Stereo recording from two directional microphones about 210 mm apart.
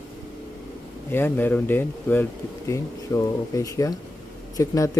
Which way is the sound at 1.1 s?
10° left (ahead or behind).